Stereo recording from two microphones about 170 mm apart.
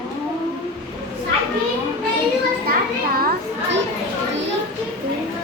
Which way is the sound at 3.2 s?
60° right (ahead or behind).